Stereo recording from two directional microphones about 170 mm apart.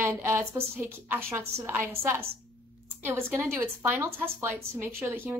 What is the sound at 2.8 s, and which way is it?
A woman's voice, 15° right (ahead or behind).